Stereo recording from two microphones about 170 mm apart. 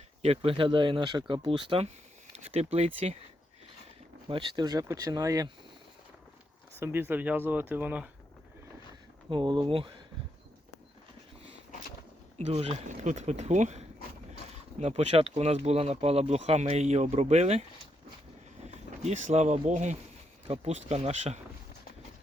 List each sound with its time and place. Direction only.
0.2 s speech: 35° right (ahead or behind)
4.3 s speech: 25° right (ahead or behind)
6.7 s speech: 15° right (ahead or behind)
9.3 s speech: 25° right (ahead or behind)
12.4 s speech: 40° right (ahead or behind)